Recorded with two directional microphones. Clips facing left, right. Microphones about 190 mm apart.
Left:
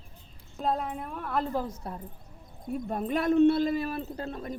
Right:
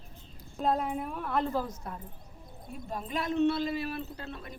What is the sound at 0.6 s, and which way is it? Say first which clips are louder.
Speech: right 1 dB; centre (ahead or behind).